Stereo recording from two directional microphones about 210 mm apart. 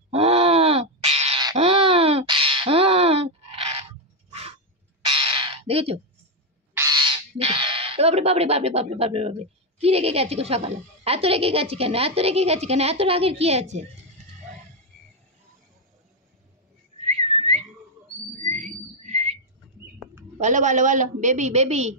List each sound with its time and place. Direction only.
0.1 s groan: 30° right (ahead or behind)
1.4 s a sound: 25° right (ahead or behind)
5.0 s crow: 25° right (ahead or behind)
6.8 s speech: 20° right (ahead or behind)
17.0 s whistling: 30° right (ahead or behind)
18.4 s a sound: 35° right (ahead or behind)
20.3 s a woman's voice: 35° right (ahead or behind)